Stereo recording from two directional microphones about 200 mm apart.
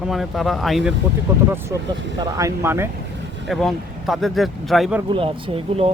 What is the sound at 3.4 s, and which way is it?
Speech, centre (ahead or behind).